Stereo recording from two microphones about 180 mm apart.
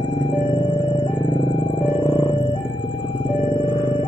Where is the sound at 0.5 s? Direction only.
25° left (ahead or behind).